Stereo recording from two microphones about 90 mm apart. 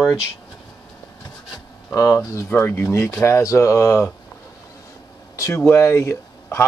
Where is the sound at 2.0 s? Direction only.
35° left (ahead or behind).